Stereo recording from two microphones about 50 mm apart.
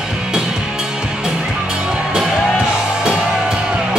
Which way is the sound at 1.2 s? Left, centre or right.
Centre.